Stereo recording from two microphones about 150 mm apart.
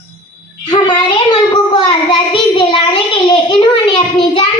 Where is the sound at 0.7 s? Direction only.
30° left (ahead or behind).